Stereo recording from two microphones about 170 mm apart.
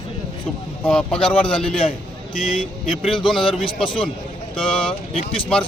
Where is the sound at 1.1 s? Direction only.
30° left (ahead or behind).